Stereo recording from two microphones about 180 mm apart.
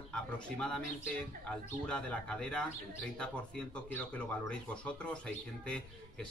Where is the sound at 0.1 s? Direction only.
5° left (ahead or behind).